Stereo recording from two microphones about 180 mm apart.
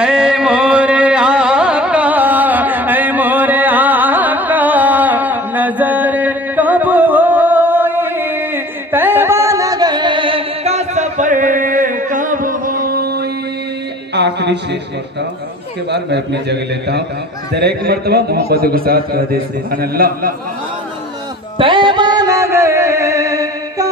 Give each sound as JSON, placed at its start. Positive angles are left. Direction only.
{"t": 0.0, "sound": "carnatic music", "side_deg": -5}
{"t": 8.9, "sound": "music", "side_deg": -10}
{"t": 14.1, "sound": "a sound", "side_deg": -70}
{"t": 15.9, "sound": "a man's voice", "side_deg": -70}
{"t": 21.5, "sound": "music", "side_deg": -25}